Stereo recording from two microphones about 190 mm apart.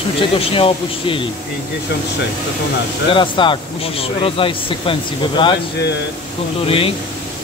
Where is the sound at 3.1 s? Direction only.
25° left (ahead or behind).